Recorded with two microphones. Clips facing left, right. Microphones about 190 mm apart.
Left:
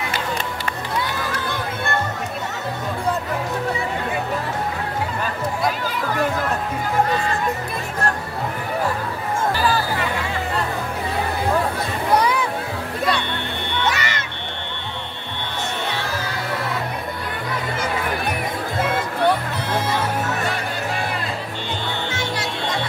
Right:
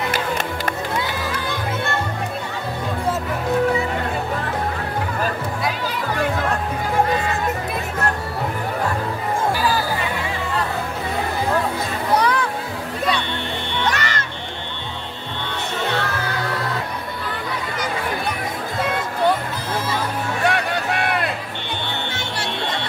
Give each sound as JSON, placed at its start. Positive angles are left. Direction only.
{"t": 12.2, "sound": "music", "side_deg": 10}
{"t": 13.8, "sound": "music", "side_deg": 10}
{"t": 20.4, "sound": "music", "side_deg": -65}